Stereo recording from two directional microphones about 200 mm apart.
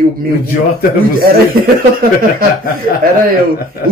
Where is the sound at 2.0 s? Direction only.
45° right (ahead or behind).